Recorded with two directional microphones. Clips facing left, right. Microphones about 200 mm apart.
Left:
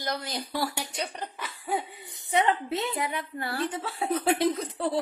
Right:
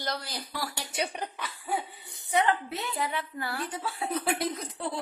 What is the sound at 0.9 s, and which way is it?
Speech, 10° right (ahead or behind).